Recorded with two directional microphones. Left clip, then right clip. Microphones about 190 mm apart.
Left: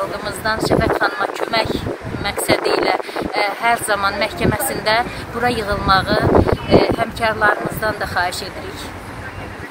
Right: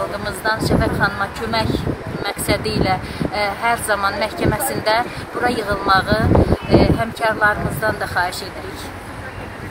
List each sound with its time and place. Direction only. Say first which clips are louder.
0.2 s speech: even; 10° left (ahead or behind)